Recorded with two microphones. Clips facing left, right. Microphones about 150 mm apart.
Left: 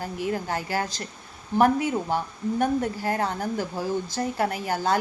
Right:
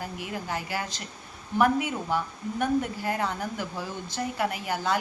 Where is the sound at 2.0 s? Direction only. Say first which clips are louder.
Left 3 dB; 40° left (ahead or behind).